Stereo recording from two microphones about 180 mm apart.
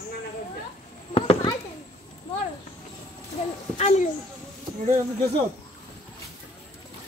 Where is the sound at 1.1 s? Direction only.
30° left (ahead or behind).